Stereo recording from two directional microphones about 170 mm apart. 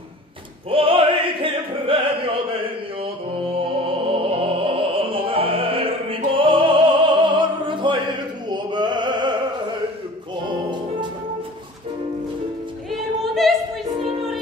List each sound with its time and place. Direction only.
0.7 s opera: 30° right (ahead or behind)
4.1 s opera: 30° right (ahead or behind)
8.5 s music: 25° right (ahead or behind)
13.2 s female singing: centre (ahead or behind)